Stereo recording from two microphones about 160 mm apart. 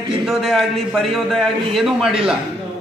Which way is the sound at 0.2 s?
Centre (ahead or behind).